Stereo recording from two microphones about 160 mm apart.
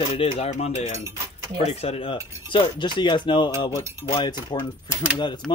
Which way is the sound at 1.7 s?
35° left (ahead or behind).